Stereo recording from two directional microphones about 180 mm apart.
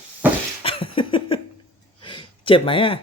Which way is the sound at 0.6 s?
30° left (ahead or behind).